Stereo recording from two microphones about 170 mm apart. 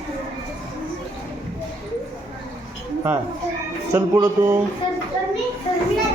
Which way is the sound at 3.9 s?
15° right (ahead or behind).